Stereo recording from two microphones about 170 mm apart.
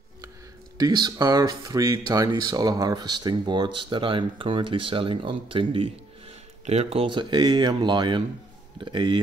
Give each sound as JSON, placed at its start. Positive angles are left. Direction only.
{"t": 0.7, "sound": "speech", "side_deg": -25}